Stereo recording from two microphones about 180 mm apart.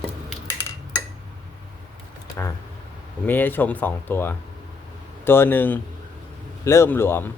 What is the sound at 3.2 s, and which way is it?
Speech, 10° left (ahead or behind).